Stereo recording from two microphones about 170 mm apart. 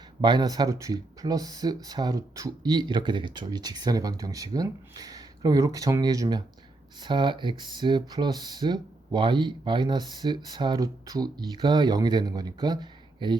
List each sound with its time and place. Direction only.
0.2 s speech: 25° right (ahead or behind)